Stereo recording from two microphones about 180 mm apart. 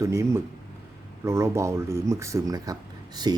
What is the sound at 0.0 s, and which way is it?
Speech, 15° right (ahead or behind).